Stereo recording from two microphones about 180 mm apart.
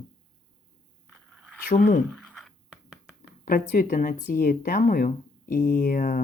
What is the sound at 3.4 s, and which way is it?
Speech, 50° left (ahead or behind).